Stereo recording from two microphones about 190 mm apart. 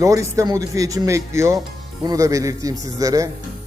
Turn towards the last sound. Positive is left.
turn(degrees=-20)  # may be behind; listen again after turning